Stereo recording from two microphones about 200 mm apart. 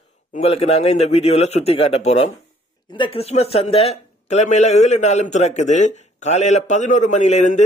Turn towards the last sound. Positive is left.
turn(degrees=35)  # may be behind; listen again after turning